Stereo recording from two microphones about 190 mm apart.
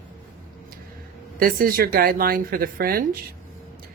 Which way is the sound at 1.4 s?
50° right (ahead or behind).